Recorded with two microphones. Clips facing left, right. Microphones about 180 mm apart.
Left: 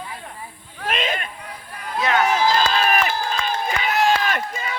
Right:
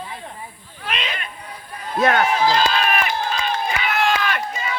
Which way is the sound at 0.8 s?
45° left (ahead or behind).